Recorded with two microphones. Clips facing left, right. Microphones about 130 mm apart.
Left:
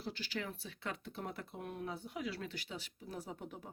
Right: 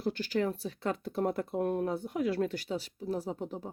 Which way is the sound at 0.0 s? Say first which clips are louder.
Right 12 dB; 50° right (ahead or behind).